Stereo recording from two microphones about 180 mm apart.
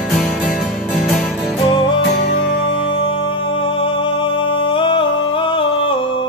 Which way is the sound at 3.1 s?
30° left (ahead or behind).